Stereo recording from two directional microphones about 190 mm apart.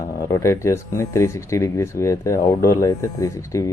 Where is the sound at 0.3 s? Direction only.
15° left (ahead or behind).